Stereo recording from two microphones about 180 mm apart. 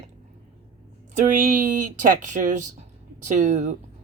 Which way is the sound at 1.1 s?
50° right (ahead or behind).